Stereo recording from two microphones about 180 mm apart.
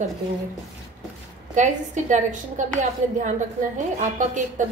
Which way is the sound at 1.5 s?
45° right (ahead or behind).